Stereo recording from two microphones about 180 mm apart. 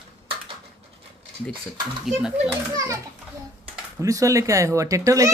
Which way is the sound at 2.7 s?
20° right (ahead or behind).